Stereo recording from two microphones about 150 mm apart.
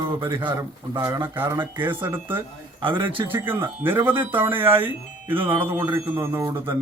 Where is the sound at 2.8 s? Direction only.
35° right (ahead or behind).